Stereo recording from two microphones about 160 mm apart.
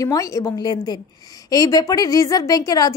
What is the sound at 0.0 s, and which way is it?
A woman's voice, 20° left (ahead or behind).